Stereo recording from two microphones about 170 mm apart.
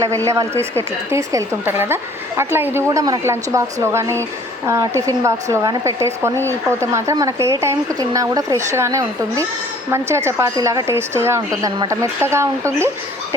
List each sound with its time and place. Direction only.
0.3 s a woman's voice: 15° right (ahead or behind)